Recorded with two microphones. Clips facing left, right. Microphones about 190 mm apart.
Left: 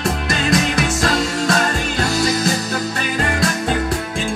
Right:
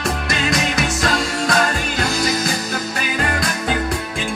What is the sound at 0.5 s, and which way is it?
Music, 45° left (ahead or behind).